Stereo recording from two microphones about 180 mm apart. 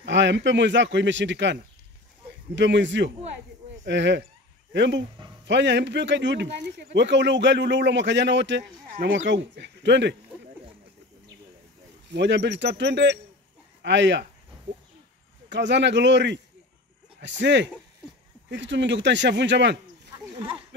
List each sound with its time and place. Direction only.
0.0 s speech: 80° right
12.1 s speech: 75° right (ahead or behind)
15.5 s speech: 75° right (ahead or behind)